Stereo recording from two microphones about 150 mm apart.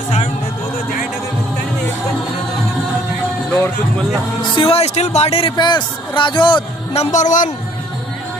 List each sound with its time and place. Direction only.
4.4 s a man's voice: 35° left (ahead or behind); by 7.5 s 55° left (ahead or behind)